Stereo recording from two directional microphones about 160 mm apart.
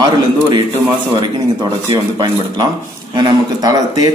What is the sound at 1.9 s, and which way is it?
Speech, 25° right (ahead or behind).